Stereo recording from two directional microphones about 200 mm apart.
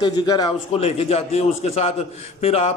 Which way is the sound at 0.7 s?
30° left (ahead or behind).